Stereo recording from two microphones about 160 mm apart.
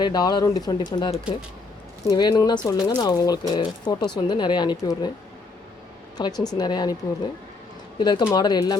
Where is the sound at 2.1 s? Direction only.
25° left (ahead or behind).